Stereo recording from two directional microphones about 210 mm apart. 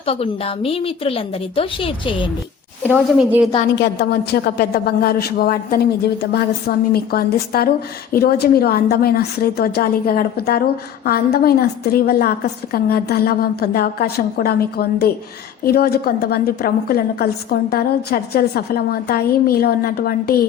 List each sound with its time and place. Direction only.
0.0 s a woman's voice: 25° left (ahead or behind)
2.9 s speech: 5° right (ahead or behind)
3.8 s a woman's voice: 50° left (ahead or behind)